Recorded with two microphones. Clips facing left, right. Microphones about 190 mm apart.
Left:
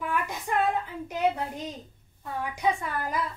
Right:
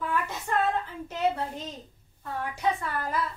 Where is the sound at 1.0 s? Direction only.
15° left (ahead or behind).